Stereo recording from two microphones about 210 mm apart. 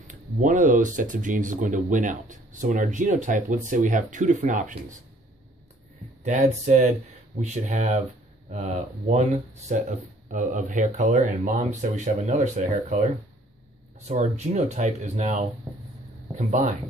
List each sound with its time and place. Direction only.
0.1 s speech: 35° right (ahead or behind)
6.2 s speech: 35° right (ahead or behind)
14.0 s speech: 30° right (ahead or behind)